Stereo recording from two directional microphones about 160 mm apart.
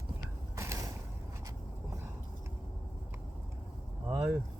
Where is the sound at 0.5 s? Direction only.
20° right (ahead or behind).